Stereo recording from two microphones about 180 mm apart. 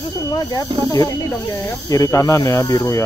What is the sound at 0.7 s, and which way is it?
Speech, 25° right (ahead or behind).